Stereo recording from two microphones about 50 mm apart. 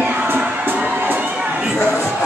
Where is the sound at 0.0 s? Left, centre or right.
Right.